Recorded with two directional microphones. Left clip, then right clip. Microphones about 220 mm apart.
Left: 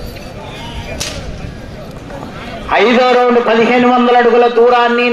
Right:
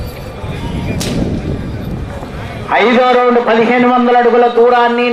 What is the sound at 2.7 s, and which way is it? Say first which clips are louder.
A man's voice: even; 30° left (ahead or behind).